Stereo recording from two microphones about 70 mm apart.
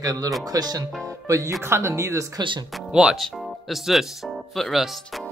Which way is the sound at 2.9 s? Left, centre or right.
Centre.